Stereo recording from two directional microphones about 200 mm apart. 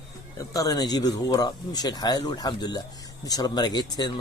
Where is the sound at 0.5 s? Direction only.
20° left (ahead or behind).